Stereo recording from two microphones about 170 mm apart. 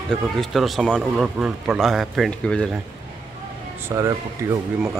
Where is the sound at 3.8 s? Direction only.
15° right (ahead or behind).